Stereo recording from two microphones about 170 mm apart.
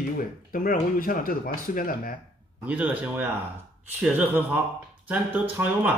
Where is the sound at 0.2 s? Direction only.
55° left (ahead or behind).